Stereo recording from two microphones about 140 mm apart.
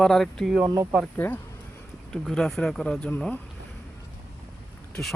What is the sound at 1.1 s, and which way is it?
Speech, 15° left (ahead or behind).